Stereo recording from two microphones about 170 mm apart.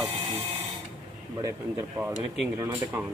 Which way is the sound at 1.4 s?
15° right (ahead or behind).